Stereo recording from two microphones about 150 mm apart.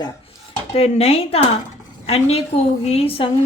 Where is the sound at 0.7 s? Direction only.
45° left (ahead or behind).